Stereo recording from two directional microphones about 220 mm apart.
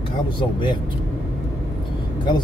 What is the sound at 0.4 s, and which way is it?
Speech, 20° left (ahead or behind).